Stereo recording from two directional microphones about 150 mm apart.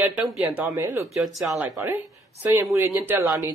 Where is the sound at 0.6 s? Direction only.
20° right (ahead or behind).